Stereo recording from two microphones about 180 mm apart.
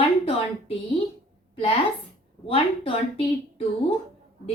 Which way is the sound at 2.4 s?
30° left (ahead or behind).